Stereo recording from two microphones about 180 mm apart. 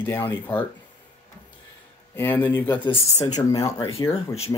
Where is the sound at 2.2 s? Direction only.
10° left (ahead or behind).